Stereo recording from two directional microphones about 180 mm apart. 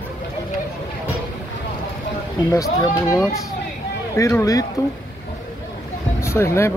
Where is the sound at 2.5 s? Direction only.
20° left (ahead or behind).